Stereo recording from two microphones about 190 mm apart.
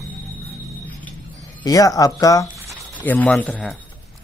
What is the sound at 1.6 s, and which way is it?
Speech, 20° left (ahead or behind).